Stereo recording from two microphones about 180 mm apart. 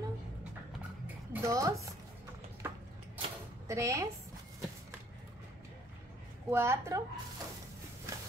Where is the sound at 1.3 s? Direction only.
15° right (ahead or behind).